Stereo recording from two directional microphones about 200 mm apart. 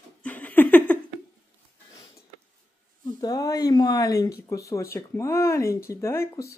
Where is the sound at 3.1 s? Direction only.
20° left (ahead or behind).